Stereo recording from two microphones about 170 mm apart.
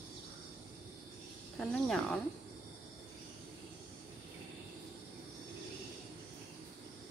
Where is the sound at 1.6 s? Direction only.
5° left (ahead or behind).